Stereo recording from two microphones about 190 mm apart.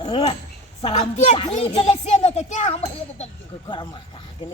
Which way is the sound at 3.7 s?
25° left (ahead or behind).